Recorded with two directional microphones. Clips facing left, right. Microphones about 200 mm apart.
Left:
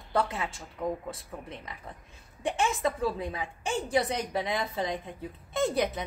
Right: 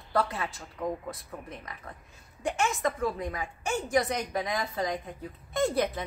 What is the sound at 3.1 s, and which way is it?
A woman's voice, 25° left (ahead or behind).